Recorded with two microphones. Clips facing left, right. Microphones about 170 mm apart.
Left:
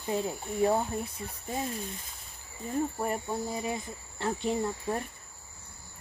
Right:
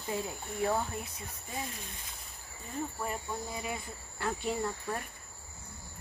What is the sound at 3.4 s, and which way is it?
Speech, 30° left (ahead or behind).